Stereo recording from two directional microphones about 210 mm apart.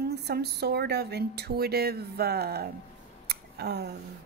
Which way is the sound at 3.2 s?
50° right (ahead or behind).